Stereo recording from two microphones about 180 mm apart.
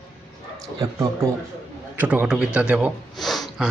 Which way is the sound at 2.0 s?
10° right (ahead or behind).